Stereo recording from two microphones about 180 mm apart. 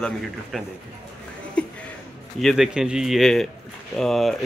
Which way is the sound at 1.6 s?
5° left (ahead or behind).